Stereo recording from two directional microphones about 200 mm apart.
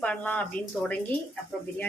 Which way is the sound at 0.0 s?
5° left (ahead or behind).